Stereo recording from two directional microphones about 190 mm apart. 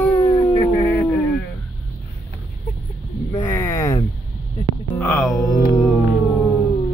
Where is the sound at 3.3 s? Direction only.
15° left (ahead or behind).